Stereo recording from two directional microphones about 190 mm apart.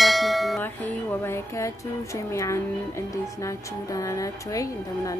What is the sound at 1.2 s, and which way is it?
Speech, 15° left (ahead or behind).